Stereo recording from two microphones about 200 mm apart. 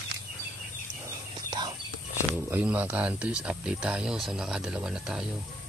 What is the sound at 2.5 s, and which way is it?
Speech, 10° right (ahead or behind).